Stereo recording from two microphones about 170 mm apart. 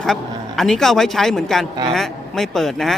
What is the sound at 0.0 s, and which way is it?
A man's voice, centre (ahead or behind).